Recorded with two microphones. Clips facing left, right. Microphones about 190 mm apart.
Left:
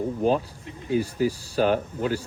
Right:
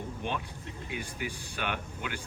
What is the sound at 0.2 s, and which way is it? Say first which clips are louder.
Speech: left 14 dB; 35° left (ahead or behind).